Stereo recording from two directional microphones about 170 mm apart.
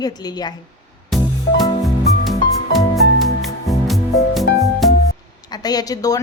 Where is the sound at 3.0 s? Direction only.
Centre (ahead or behind).